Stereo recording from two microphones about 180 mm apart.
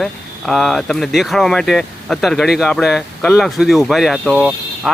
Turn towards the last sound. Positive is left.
turn(degrees=0)  # may be behind; listen again after turning